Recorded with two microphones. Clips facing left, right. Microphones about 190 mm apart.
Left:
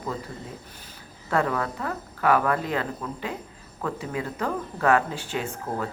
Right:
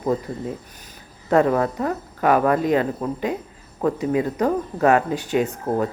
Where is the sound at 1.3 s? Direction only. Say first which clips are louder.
Right 8 dB; 25° right (ahead or behind).